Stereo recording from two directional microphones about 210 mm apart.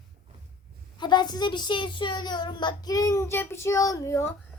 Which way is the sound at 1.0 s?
20° left (ahead or behind).